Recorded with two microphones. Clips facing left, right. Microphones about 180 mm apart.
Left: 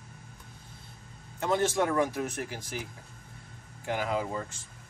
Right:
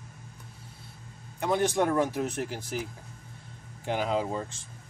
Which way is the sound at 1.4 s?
15° right (ahead or behind).